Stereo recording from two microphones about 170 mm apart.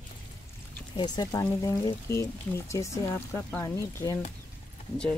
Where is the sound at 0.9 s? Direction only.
25° left (ahead or behind).